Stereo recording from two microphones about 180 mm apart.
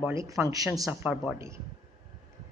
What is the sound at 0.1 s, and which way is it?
Speech, 15° right (ahead or behind).